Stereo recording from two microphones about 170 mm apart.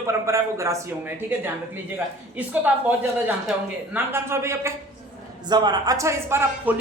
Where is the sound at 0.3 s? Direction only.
15° right (ahead or behind).